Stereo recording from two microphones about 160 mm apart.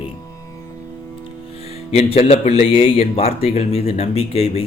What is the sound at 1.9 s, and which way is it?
Speech, 40° left (ahead or behind).